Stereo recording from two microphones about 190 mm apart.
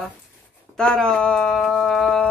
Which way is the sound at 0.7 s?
5° left (ahead or behind).